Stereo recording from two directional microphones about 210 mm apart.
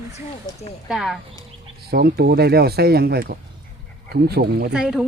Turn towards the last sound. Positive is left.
turn(degrees=-5)  # may be behind; listen again after turning